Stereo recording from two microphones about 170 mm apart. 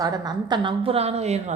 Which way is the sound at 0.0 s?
20° right (ahead or behind).